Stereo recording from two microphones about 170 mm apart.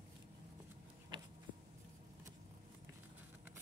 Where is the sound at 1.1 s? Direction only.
25° right (ahead or behind).